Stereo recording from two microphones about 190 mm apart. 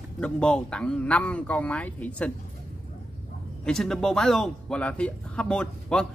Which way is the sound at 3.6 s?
5° left (ahead or behind).